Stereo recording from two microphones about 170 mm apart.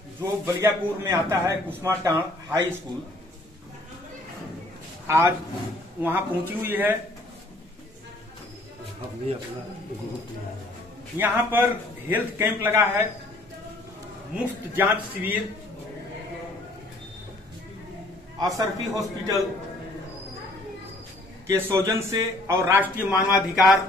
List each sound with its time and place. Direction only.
0.2 s a man's voice: 15° right (ahead or behind)
5.0 s a man's voice: 15° right (ahead or behind)
11.1 s a man's voice: 10° right (ahead or behind)
14.3 s a man's voice: 10° right (ahead or behind)
18.4 s a man's voice: 20° right (ahead or behind)
21.5 s a man's voice: 15° right (ahead or behind)